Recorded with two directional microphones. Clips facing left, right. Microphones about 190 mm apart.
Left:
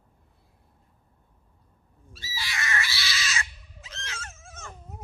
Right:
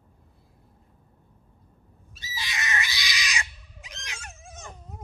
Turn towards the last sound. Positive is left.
turn(degrees=-15)  # may be behind; listen again after turning